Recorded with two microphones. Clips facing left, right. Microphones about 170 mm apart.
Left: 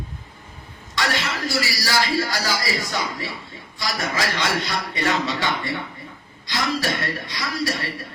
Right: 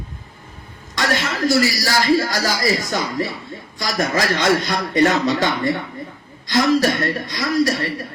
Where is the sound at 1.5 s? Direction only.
45° right (ahead or behind).